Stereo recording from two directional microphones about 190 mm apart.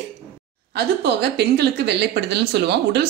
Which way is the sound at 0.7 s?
60° right (ahead or behind).